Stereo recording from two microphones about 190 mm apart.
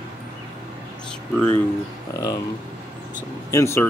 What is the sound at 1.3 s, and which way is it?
Speech, 10° left (ahead or behind).